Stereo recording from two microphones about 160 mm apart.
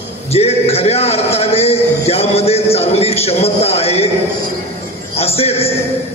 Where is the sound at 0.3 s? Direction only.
40° left (ahead or behind).